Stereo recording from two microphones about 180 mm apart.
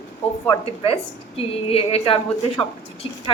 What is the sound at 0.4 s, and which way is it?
A woman's voice, 30° left (ahead or behind).